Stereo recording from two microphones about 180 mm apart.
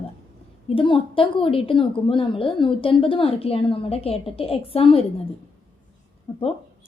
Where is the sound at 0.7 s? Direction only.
30° left (ahead or behind).